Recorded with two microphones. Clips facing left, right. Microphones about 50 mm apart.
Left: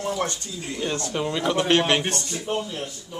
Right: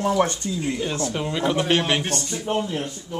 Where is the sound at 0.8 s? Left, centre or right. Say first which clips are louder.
Right 1 dB; centre.